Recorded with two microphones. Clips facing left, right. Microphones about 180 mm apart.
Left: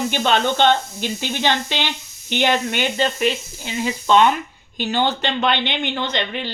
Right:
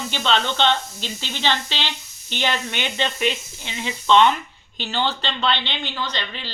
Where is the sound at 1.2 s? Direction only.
55° left (ahead or behind).